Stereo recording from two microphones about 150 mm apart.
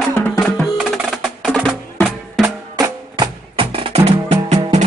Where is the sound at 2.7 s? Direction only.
30° right (ahead or behind); by 4.9 s 50° right (ahead or behind).